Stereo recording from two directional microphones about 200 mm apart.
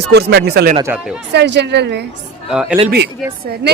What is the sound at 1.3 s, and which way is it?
Speech, 60° right (ahead or behind).